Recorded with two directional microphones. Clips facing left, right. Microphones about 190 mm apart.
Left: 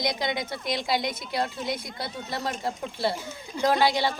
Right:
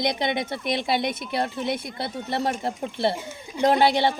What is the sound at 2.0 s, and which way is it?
Speech, 25° right (ahead or behind).